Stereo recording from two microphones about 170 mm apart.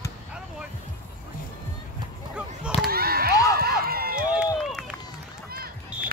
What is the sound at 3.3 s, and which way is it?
Run, 20° left (ahead or behind).